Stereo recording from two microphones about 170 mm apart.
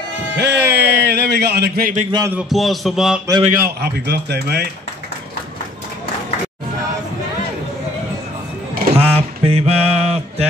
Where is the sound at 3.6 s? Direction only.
70° right (ahead or behind).